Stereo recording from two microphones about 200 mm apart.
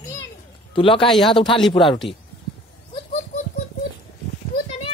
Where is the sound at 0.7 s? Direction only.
25° left (ahead or behind).